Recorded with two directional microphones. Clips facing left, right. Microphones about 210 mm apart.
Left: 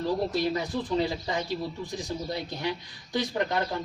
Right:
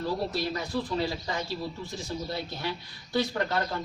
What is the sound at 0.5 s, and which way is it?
Speech, 20° left (ahead or behind).